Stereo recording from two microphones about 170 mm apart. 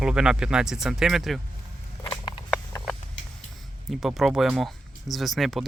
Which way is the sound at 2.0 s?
25° left (ahead or behind).